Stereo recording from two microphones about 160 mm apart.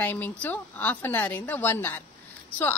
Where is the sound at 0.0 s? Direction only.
10° left (ahead or behind).